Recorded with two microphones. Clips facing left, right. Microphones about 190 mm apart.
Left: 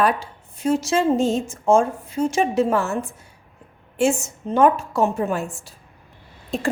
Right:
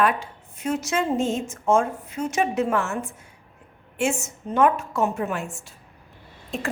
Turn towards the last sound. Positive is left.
turn(degrees=35)  # may be behind; listen again after turning